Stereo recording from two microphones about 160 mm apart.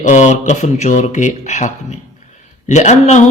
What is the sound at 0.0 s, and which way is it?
Speech, 50° left (ahead or behind).